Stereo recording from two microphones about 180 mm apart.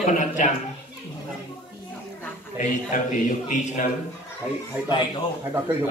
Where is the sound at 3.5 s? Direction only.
45° left (ahead or behind).